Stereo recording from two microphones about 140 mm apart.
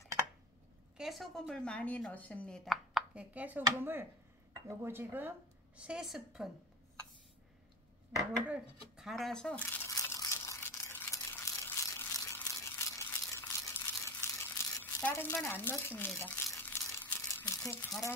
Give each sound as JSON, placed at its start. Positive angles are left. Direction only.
{"t": 0.9, "sound": "speech", "side_deg": 0}
{"t": 8.5, "sound": "crunch", "side_deg": -5}
{"t": 16.5, "sound": "crumpling", "side_deg": 15}